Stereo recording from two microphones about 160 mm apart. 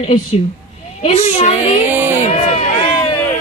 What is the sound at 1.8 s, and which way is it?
Music, 10° right (ahead or behind).